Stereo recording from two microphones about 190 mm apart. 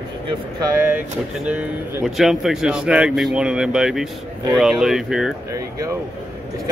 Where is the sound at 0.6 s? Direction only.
20° right (ahead or behind).